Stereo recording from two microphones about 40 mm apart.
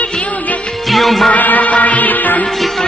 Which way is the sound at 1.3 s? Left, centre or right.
Left.